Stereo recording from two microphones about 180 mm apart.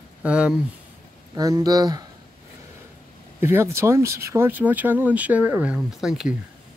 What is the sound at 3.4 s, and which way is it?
Speech, 15° right (ahead or behind).